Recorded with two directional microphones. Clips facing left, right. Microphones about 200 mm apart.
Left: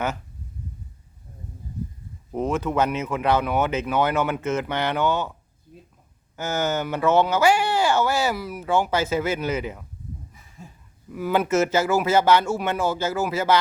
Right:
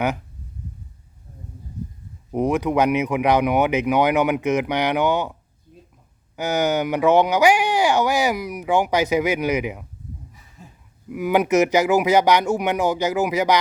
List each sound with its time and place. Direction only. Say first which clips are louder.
2.3 s speech: right 4 dB; 15° right (ahead or behind)
11.1 s speech: right 3 dB; 15° right (ahead or behind)